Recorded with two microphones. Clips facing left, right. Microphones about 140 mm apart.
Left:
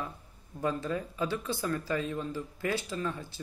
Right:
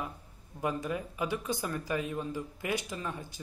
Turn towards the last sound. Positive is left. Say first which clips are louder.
# left 3 dB
turn(degrees=-15)  # may be behind; listen again after turning